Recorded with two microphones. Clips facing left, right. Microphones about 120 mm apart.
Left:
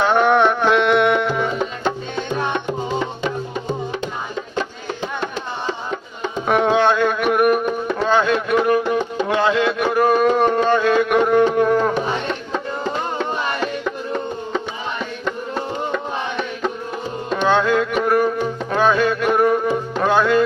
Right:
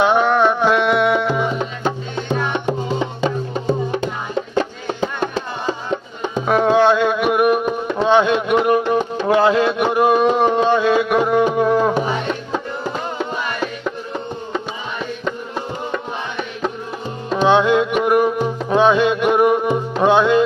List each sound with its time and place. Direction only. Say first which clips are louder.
0.0 s a sound: right 1 dB; 10° right (ahead or behind)
0.3 s music: even; 5° right (ahead or behind)
6.5 s music: right 2 dB; centre (ahead or behind)
7.9 s music: right 4 dB; 20° right (ahead or behind)
9.4 s a sound: right 1 dB; 30° right (ahead or behind); by 11.9 s 10° right (ahead or behind)
12.3 s music: right 1 dB; 10° right (ahead or behind)
17.5 s music: right 3 dB; 15° right (ahead or behind)